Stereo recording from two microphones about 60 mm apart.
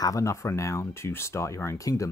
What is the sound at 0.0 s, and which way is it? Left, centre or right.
Speech, left.